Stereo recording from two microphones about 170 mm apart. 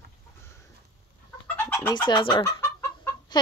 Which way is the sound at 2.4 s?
15° left (ahead or behind).